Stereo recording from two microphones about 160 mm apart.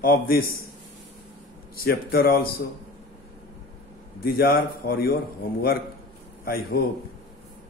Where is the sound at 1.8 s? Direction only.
70° left (ahead or behind).